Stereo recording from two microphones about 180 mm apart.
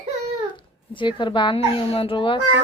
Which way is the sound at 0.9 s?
25° left (ahead or behind).